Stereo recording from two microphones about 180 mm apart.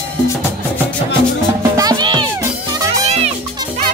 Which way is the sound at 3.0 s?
35° right (ahead or behind).